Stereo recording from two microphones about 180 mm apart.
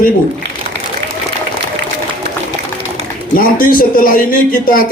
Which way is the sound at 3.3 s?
50° left (ahead or behind).